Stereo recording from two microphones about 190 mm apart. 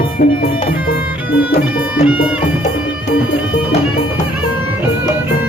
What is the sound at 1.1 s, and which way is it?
Music, 10° right (ahead or behind).